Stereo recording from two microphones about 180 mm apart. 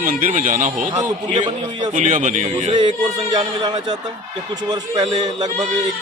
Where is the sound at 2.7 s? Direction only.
25° right (ahead or behind).